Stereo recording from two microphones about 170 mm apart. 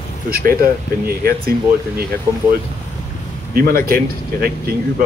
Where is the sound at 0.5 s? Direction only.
60° right (ahead or behind).